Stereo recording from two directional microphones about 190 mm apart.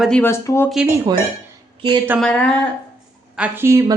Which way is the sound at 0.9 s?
15° right (ahead or behind).